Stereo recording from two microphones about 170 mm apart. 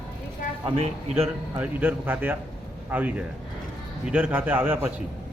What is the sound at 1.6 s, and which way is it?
A man's voice, 10° right (ahead or behind).